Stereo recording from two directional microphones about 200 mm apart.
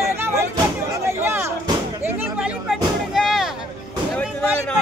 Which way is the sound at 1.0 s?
10° right (ahead or behind).